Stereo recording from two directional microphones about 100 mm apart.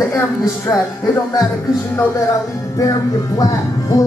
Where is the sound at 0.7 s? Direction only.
35° left (ahead or behind).